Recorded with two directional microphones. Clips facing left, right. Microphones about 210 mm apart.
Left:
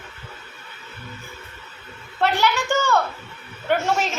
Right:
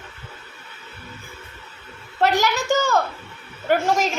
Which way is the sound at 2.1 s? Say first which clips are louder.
Right 1 dB; 40° right (ahead or behind).